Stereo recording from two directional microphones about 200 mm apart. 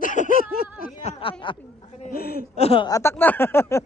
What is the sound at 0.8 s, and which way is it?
Speech, 35° left (ahead or behind).